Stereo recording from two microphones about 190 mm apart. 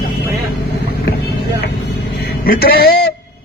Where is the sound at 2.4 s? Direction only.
50° left (ahead or behind).